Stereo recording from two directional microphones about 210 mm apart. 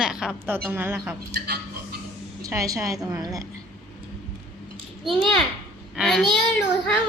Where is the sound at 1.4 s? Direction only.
50° right (ahead or behind).